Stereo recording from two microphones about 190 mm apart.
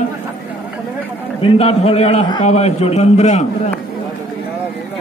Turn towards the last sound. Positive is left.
turn(degrees=35)  # may be behind; listen again after turning